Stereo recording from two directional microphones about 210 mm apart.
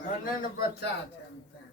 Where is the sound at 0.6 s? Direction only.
50° left (ahead or behind).